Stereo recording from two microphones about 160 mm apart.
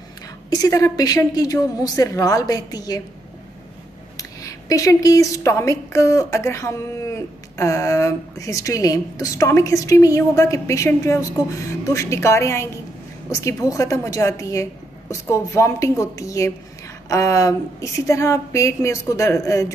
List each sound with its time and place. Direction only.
0.5 s a woman's voice: 20° left (ahead or behind)
4.2 s a woman's voice: 20° left (ahead or behind)